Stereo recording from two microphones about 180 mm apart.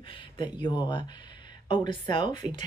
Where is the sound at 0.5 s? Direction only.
25° left (ahead or behind).